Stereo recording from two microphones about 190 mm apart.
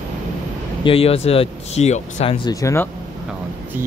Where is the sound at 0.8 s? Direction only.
30° left (ahead or behind).